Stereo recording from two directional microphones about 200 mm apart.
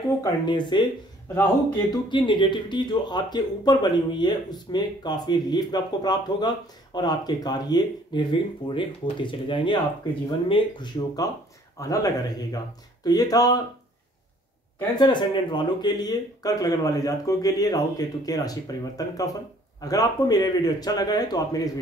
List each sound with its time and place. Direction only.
0.2 s speech: 20° left (ahead or behind)
15.0 s speech: 20° left (ahead or behind)